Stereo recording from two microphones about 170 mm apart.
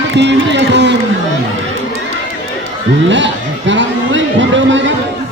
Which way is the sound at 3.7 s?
90° right.